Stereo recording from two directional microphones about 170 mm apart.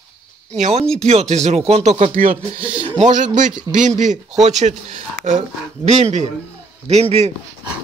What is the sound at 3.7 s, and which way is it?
A man's voice, 45° right (ahead or behind).